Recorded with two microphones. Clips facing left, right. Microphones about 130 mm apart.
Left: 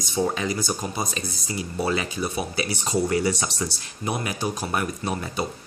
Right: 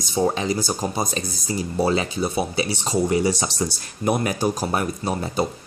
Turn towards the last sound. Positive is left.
turn(degrees=-35)  # may be behind; listen again after turning